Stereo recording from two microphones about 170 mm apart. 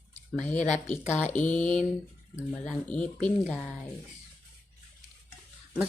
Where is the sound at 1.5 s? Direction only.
10° left (ahead or behind).